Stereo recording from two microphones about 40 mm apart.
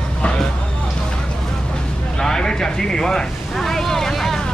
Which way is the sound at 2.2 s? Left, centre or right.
Centre.